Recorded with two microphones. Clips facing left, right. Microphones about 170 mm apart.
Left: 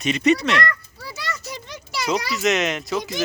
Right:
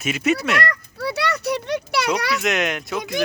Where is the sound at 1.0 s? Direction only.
65° right (ahead or behind).